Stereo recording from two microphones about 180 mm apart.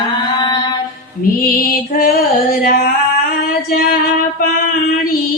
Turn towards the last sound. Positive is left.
turn(degrees=55)  # may be behind; listen again after turning